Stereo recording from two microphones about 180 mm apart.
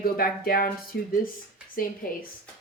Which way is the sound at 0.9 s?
70° left (ahead or behind).